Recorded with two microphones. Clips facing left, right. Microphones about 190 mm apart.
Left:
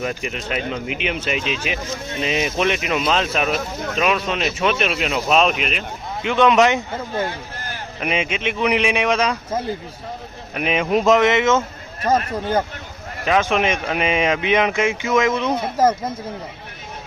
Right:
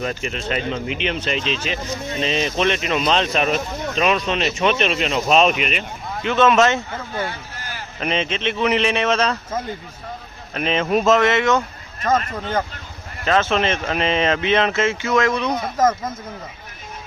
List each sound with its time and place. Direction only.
0.0 s speech: 10° left (ahead or behind)
6.2 s speech: 15° left (ahead or behind)
8.0 s speech: 10° left (ahead or behind)